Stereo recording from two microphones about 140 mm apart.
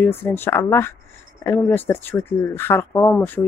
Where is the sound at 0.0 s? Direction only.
15° left (ahead or behind).